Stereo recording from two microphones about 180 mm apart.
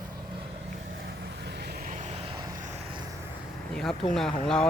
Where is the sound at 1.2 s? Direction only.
70° right (ahead or behind); by 2.8 s 45° right (ahead or behind).